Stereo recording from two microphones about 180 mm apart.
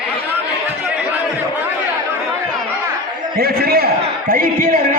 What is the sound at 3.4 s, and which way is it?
A man's voice, 60° right (ahead or behind).